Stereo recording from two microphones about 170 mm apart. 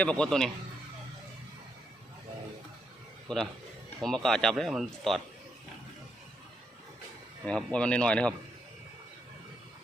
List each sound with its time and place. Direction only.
0.0 s speech: 5° left (ahead or behind)
3.2 s speech: centre (ahead or behind)
7.4 s speech: 5° left (ahead or behind)